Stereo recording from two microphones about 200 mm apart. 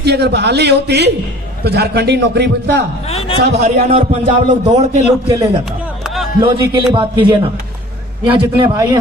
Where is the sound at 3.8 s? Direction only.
30° right (ahead or behind).